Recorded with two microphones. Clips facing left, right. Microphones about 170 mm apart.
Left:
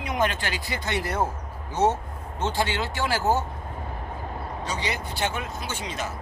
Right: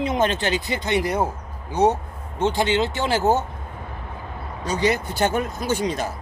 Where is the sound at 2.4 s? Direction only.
15° right (ahead or behind).